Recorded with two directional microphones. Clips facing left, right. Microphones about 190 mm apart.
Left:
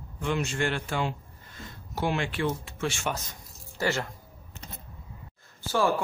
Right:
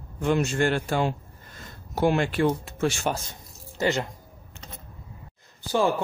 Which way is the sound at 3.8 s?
20° right (ahead or behind).